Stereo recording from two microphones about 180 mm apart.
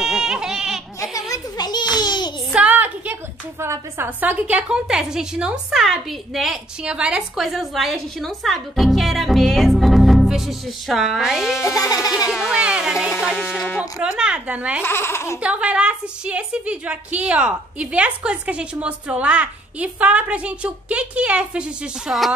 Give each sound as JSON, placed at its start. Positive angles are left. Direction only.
{"t": 0.0, "sound": "goat", "side_deg": -5}
{"t": 1.1, "sound": "a sound", "side_deg": 20}
{"t": 2.5, "sound": "a sound", "side_deg": -10}
{"t": 3.6, "sound": "a woman's voice", "side_deg": -15}
{"t": 11.6, "sound": "speech", "side_deg": 20}
{"t": 12.3, "sound": "a woman's voice", "side_deg": -5}
{"t": 14.8, "sound": "speech", "side_deg": 15}
{"t": 15.4, "sound": "a woman's voice", "side_deg": -5}